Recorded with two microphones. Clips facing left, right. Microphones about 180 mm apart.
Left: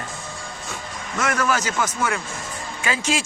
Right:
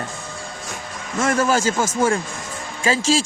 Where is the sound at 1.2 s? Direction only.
30° right (ahead or behind).